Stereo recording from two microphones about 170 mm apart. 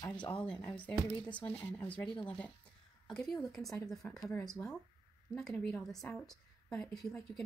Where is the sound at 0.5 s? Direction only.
10° left (ahead or behind).